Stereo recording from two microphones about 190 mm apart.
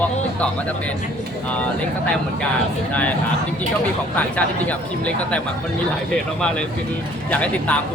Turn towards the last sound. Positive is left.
turn(degrees=5)  # may be behind; listen again after turning